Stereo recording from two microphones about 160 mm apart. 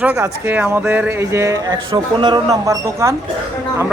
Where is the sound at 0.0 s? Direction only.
15° right (ahead or behind).